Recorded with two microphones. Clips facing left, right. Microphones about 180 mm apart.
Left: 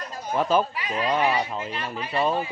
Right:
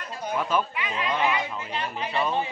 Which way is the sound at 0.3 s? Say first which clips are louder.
Left 4 dB; 35° left (ahead or behind).